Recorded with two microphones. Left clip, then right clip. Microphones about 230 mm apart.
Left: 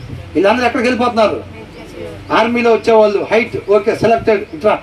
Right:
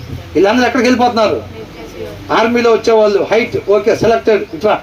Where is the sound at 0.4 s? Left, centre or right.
Right.